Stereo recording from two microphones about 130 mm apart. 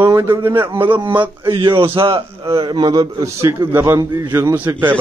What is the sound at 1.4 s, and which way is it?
A man's voice, 40° right (ahead or behind).